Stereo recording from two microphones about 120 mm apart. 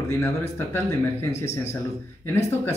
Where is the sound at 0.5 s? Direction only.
20° left (ahead or behind).